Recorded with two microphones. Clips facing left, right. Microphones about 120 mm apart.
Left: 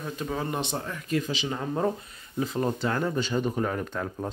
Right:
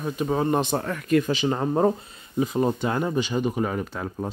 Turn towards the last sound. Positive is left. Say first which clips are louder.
# right 2 dB
turn(degrees=-5)  # may be behind; listen again after turning